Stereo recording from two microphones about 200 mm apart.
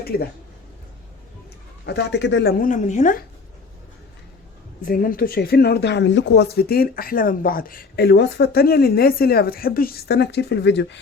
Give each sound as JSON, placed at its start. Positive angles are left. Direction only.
{"t": 0.1, "sound": "speech", "side_deg": 50}
{"t": 1.9, "sound": "speech", "side_deg": 60}
{"t": 4.9, "sound": "speech", "side_deg": 45}